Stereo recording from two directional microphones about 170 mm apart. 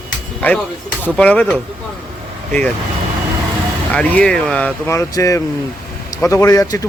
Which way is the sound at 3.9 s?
5° left (ahead or behind).